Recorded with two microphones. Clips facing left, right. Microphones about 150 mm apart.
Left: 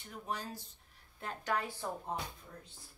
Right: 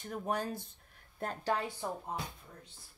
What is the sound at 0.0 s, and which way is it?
Speech, 50° right (ahead or behind).